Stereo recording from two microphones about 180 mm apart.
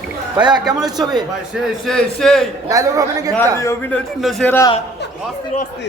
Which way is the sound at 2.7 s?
20° right (ahead or behind).